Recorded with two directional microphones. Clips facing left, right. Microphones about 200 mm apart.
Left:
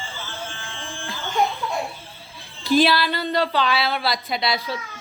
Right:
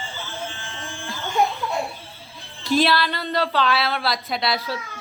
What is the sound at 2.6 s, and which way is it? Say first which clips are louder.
A woman's voice: left 2 dB; centre (ahead or behind).